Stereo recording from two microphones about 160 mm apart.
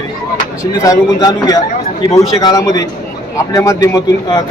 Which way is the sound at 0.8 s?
20° left (ahead or behind).